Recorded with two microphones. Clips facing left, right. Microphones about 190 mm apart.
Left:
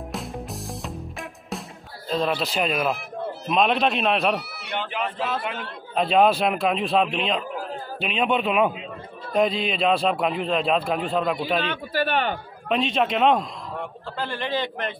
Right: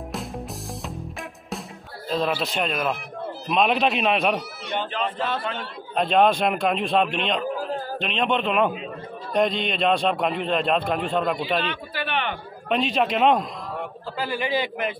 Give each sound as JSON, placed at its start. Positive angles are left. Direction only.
{"t": 0.1, "sound": "music", "side_deg": 0}
{"t": 2.0, "sound": "a man's voice", "side_deg": 0}
{"t": 11.6, "sound": "speech", "side_deg": 45}
{"t": 12.6, "sound": "a man's voice", "side_deg": 0}